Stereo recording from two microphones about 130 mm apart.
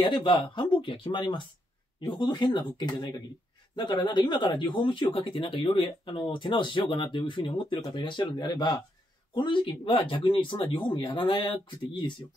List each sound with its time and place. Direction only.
0.0 s speech: 40° left (ahead or behind)